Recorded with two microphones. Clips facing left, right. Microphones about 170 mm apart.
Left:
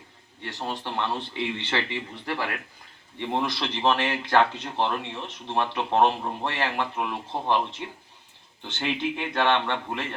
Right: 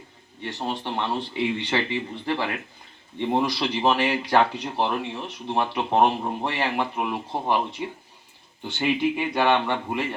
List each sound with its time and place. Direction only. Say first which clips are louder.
0.4 s speech: right 3 dB; 15° right (ahead or behind)